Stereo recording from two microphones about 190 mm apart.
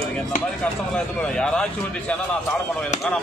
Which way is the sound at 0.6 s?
5° left (ahead or behind).